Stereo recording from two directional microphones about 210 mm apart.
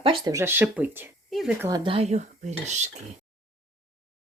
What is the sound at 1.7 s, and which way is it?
Cutlery, 20° right (ahead or behind).